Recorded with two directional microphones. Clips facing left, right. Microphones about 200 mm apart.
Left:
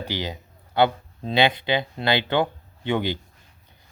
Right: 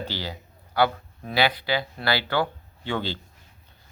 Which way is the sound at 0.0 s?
15° left (ahead or behind).